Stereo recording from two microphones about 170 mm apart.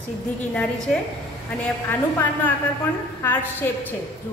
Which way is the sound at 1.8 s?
10° left (ahead or behind).